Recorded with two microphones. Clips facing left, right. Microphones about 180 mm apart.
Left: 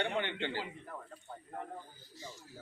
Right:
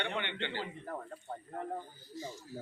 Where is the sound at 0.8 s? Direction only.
40° right (ahead or behind).